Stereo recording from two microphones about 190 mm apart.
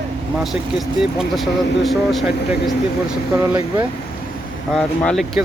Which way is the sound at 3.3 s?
15° right (ahead or behind).